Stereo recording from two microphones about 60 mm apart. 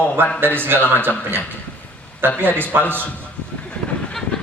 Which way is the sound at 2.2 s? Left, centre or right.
Right.